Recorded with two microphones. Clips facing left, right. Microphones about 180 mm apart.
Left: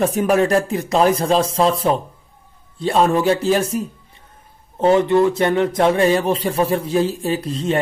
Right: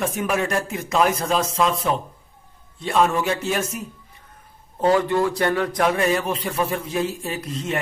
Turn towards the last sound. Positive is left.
turn(degrees=30)  # may be behind; listen again after turning